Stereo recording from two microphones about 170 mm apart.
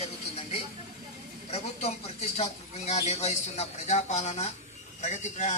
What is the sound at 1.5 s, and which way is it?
A man's voice, 40° left (ahead or behind).